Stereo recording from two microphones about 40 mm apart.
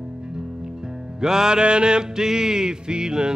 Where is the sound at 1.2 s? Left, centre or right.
Centre.